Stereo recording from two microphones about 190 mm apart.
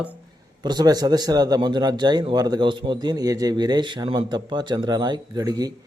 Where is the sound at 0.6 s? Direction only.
20° right (ahead or behind).